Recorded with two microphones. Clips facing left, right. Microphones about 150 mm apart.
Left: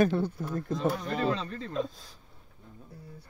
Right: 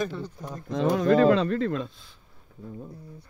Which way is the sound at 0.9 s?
90° right.